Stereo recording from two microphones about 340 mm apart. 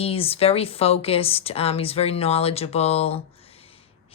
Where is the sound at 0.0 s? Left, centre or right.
Centre.